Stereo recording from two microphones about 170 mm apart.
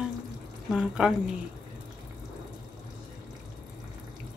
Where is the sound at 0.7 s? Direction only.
5° right (ahead or behind).